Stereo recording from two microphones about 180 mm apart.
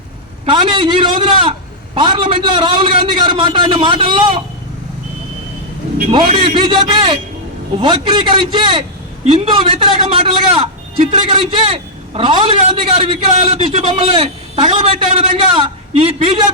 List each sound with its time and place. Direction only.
0.4 s a sound: 25° right (ahead or behind)
2.0 s a man's voice: 25° right (ahead or behind)
6.1 s a man's voice: 30° right (ahead or behind)